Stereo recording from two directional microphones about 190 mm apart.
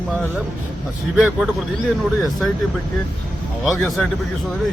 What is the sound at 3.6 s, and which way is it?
Speech, centre (ahead or behind).